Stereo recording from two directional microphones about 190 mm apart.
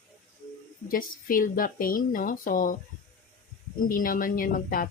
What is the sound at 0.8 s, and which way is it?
Speech, 45° left (ahead or behind).